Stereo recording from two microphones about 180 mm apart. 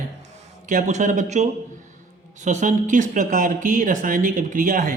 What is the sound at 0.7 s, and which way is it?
A man's voice, 45° right (ahead or behind).